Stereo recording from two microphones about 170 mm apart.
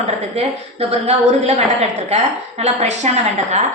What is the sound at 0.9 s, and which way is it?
A woman's voice, 40° right (ahead or behind).